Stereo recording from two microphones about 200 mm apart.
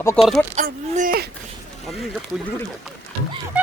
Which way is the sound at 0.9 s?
45° right (ahead or behind).